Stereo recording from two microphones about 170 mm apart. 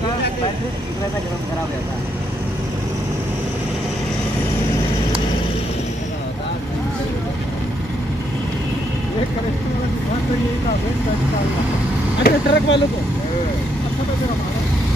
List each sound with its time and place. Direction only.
12.2 s speech: 75° left (ahead or behind)